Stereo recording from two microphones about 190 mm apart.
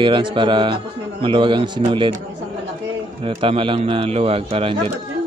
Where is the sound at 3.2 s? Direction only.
30° right (ahead or behind).